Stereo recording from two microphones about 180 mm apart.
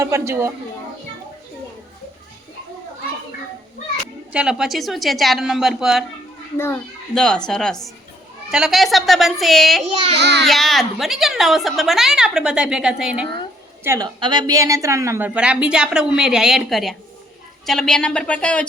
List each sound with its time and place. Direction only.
0.0 s a woman's voice: 15° right (ahead or behind)
4.3 s a woman's voice: 5° right (ahead or behind)
7.1 s a woman's voice: 5° left (ahead or behind)
10.2 s a child's voice: 70° right (ahead or behind)
10.4 s a woman's voice: centre (ahead or behind)
13.8 s a woman's voice: 15° right (ahead or behind)
15.4 s a woman's voice: 5° right (ahead or behind)